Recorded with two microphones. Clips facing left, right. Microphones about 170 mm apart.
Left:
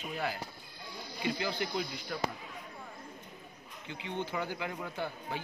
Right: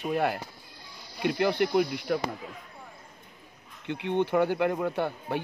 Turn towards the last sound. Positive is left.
turn(degrees=-65)  # may be behind; listen again after turning